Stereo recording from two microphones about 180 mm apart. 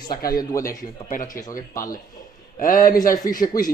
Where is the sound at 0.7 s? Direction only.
45° left (ahead or behind).